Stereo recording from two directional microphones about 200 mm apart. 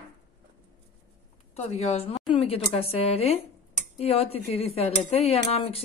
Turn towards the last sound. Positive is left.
turn(degrees=30)  # may be behind; listen again after turning